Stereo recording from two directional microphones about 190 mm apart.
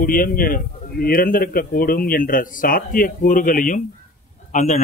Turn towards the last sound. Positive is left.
turn(degrees=40)  # may be behind; listen again after turning